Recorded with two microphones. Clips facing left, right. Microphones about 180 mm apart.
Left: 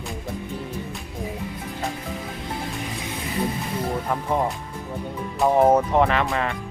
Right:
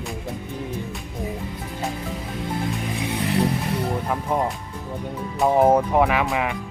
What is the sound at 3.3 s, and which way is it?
Music, 75° right (ahead or behind).